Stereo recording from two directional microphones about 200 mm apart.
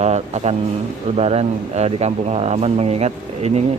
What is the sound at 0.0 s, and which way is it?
Speech, 35° right (ahead or behind).